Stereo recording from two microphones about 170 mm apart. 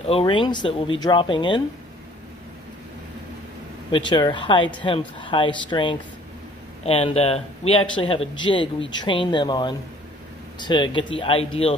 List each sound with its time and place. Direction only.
0.0 s speech: 30° left (ahead or behind)
3.9 s speech: 25° left (ahead or behind)